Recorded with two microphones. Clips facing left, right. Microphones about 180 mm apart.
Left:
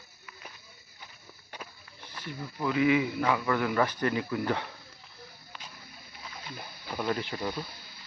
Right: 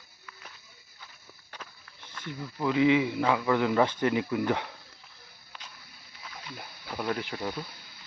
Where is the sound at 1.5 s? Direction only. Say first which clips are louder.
Left 2 dB; 10° left (ahead or behind).